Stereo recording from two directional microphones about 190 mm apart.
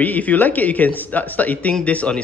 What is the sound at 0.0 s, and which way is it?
Speech, 10° left (ahead or behind).